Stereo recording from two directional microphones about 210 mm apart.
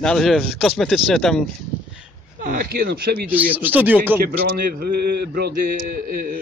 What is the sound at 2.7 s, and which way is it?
Speech, 50° right (ahead or behind).